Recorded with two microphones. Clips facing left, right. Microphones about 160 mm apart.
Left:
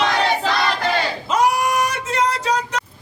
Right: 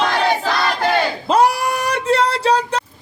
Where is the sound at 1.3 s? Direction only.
35° right (ahead or behind).